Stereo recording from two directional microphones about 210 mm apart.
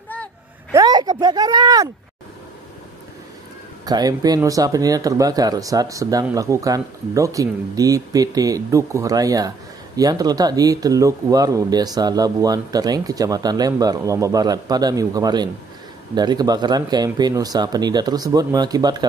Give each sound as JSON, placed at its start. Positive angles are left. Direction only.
{"t": 0.7, "sound": "speech", "side_deg": -20}
{"t": 3.8, "sound": "speech", "side_deg": -20}